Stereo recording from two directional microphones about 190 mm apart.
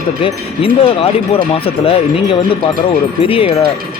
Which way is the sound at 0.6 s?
30° left (ahead or behind).